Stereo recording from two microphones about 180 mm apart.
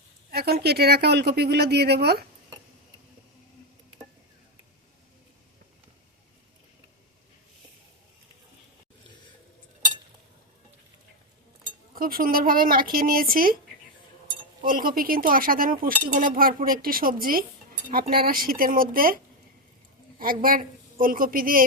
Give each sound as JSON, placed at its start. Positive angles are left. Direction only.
{"t": 0.3, "sound": "speech", "side_deg": -60}
{"t": 11.9, "sound": "speech", "side_deg": -55}
{"t": 14.6, "sound": "speech", "side_deg": -50}